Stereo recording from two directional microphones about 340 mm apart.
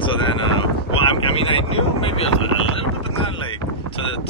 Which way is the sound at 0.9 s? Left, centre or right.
Centre.